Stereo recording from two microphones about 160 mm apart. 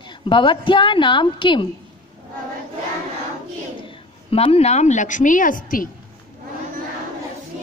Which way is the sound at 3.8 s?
30° left (ahead or behind).